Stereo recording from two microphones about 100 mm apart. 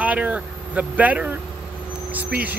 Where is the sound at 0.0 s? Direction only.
15° right (ahead or behind).